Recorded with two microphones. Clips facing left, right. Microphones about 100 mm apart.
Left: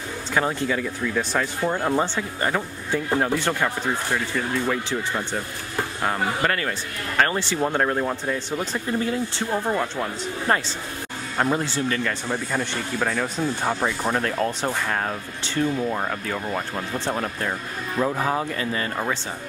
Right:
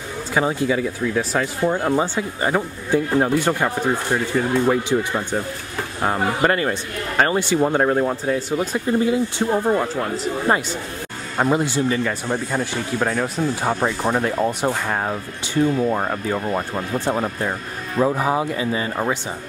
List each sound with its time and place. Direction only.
0.3 s speech: 10° right (ahead or behind)